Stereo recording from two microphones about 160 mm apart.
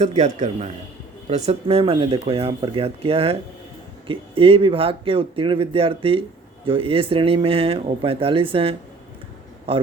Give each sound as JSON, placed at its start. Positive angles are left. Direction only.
{"t": 0.0, "sound": "a man's voice", "side_deg": -45}